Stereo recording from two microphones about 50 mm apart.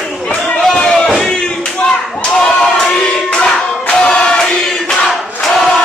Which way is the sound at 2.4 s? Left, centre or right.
Left.